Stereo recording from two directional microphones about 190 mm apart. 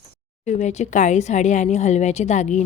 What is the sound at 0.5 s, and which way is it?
A woman's voice, 40° left (ahead or behind).